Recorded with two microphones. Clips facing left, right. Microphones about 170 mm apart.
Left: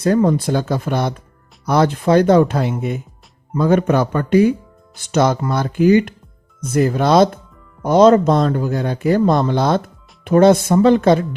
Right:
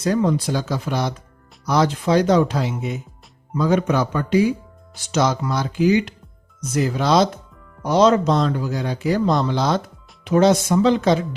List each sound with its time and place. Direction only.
0.0 s speech: 50° left (ahead or behind)